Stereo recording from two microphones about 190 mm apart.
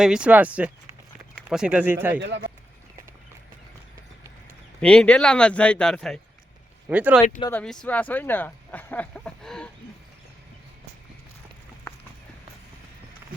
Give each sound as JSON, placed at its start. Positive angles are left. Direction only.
{"t": 0.0, "sound": "speech", "side_deg": -5}
{"t": 2.2, "sound": "a man's voice", "side_deg": -65}
{"t": 4.8, "sound": "speech", "side_deg": 5}
{"t": 6.8, "sound": "speech", "side_deg": -10}
{"t": 7.5, "sound": "speech", "side_deg": 5}